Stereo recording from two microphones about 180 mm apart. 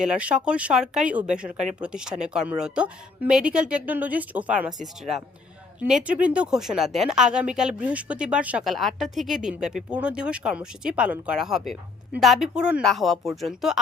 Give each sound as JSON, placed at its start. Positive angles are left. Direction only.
{"t": 0.0, "sound": "speech", "side_deg": -5}
{"t": 1.5, "sound": "speech", "side_deg": -40}
{"t": 1.8, "sound": "speech", "side_deg": -5}